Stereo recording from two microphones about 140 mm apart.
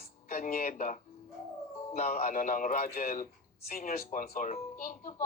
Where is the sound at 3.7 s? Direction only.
85° left.